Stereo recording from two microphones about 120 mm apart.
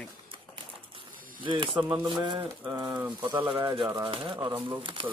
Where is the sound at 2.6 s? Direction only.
20° right (ahead or behind).